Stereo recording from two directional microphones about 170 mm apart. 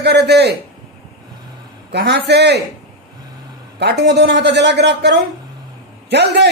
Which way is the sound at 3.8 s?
80° right.